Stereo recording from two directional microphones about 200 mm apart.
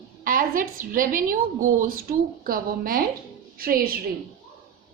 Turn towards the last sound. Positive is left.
turn(degrees=-45)  # may be behind; listen again after turning